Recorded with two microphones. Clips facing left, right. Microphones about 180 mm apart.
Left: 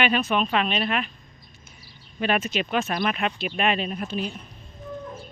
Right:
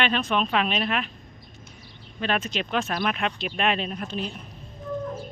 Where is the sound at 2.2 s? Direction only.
10° left (ahead or behind).